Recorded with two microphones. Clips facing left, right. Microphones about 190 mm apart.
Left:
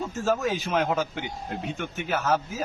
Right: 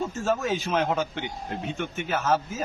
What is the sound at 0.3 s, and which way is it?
A man's voice, centre (ahead or behind).